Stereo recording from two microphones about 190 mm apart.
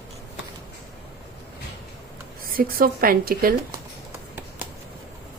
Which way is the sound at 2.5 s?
50° right (ahead or behind).